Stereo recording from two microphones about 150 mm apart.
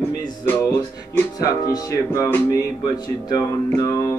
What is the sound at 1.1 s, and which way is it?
Speech, 25° left (ahead or behind).